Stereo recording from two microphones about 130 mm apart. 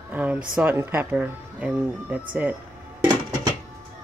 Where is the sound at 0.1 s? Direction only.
10° right (ahead or behind).